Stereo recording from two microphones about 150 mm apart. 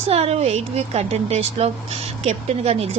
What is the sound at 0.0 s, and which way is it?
A woman's voice, 40° right (ahead or behind).